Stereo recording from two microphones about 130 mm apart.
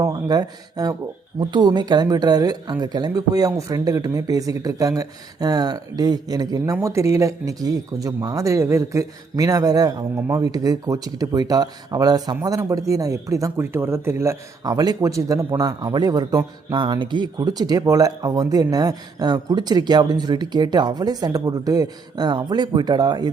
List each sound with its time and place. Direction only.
0.0 s speech: 30° right (ahead or behind)